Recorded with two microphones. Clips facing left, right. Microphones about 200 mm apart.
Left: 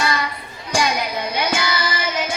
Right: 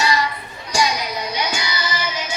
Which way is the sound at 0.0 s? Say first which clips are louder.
Right 2 dB; 55° left (ahead or behind).